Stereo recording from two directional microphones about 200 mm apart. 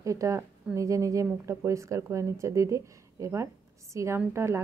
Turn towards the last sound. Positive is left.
turn(degrees=-15)  # may be behind; listen again after turning